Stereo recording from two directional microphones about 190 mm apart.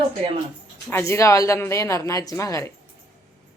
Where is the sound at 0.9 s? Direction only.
15° left (ahead or behind).